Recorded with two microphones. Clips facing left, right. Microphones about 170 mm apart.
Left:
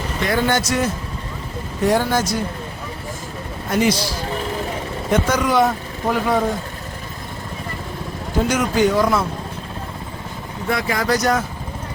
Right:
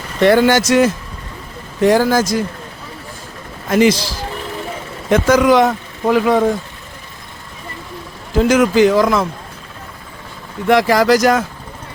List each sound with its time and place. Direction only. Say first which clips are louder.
0.2 s speech: right 9 dB; 75° right (ahead or behind)
3.7 s a man's voice: right 6 dB; 90° right
5.1 s speech: right 6 dB; 90° right
8.4 s speech: right 7 dB; 90° right
10.7 s speech: right 9 dB; 90° right